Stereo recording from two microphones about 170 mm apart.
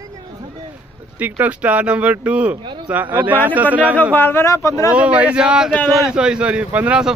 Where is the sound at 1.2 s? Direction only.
10° right (ahead or behind).